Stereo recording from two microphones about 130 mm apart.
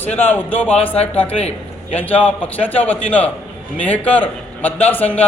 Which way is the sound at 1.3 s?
55° left (ahead or behind).